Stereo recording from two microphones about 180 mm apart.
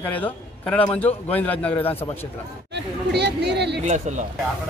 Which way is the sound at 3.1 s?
70° right (ahead or behind).